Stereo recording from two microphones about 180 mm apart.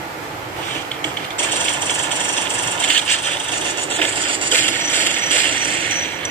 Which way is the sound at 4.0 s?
30° right (ahead or behind).